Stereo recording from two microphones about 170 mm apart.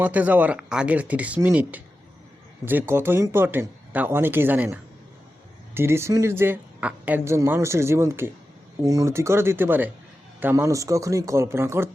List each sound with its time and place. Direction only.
0.0 s speech: 10° right (ahead or behind)